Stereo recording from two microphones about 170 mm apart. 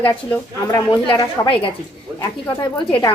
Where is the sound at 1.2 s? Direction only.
30° left (ahead or behind).